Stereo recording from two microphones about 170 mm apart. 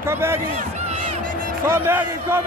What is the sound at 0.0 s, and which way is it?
Speech, 15° right (ahead or behind).